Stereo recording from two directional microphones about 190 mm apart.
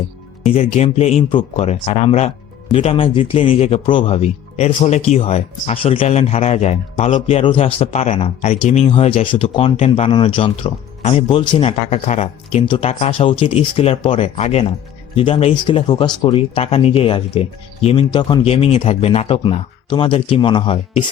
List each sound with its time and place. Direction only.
0.5 s speech: 35° left (ahead or behind)